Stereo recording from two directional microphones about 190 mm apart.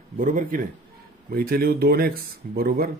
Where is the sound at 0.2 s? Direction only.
45° right (ahead or behind).